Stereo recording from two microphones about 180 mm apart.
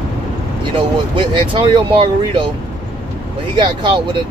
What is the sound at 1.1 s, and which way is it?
Speech, 25° right (ahead or behind).